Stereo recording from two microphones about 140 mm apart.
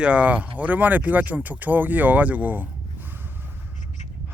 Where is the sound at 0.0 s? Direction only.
10° right (ahead or behind).